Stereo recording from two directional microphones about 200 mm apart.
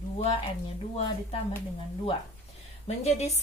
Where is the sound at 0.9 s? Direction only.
30° left (ahead or behind).